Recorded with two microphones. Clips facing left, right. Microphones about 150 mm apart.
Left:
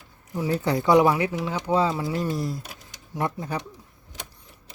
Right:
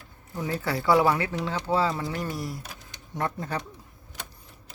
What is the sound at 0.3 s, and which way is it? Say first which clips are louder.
Speech: left 5 dB; 15° left (ahead or behind).